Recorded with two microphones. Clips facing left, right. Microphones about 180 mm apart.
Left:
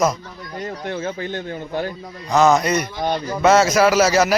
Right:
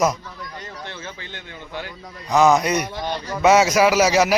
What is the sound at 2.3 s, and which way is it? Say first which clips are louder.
Speech: left 1 dB; 10° right (ahead or behind).